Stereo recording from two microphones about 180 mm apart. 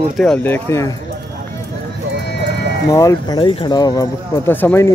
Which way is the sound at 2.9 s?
20° left (ahead or behind).